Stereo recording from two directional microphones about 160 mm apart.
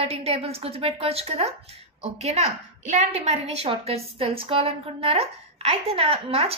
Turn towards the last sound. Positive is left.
turn(degrees=-40)  # may be behind; listen again after turning